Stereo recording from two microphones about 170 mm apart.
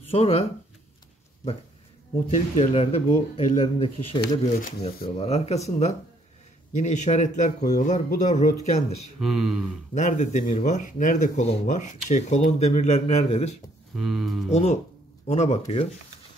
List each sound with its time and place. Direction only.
0.1 s speech: 35° left (ahead or behind)
2.2 s speech: 40° left (ahead or behind)
4.4 s speech: 45° left (ahead or behind)
9.2 s speech: centre (ahead or behind)
9.9 s speech: 45° left (ahead or behind)
13.9 s speech: centre (ahead or behind)
14.5 s speech: 40° left (ahead or behind)